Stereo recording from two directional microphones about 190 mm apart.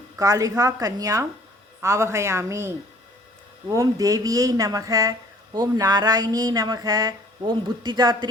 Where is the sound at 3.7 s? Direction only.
20° right (ahead or behind).